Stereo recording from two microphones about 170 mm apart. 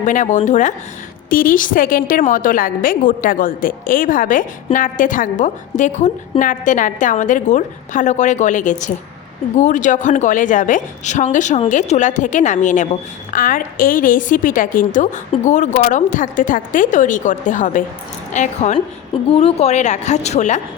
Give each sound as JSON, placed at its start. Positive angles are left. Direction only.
{"t": 0.0, "sound": "a woman's voice", "side_deg": 50}